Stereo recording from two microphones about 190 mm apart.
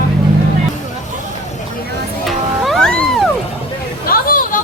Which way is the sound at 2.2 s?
Centre (ahead or behind).